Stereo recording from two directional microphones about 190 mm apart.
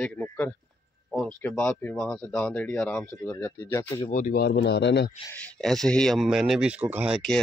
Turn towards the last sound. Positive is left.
turn(degrees=0)  # may be behind; listen again after turning